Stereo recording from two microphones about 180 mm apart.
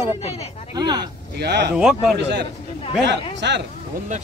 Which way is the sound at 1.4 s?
65° right (ahead or behind).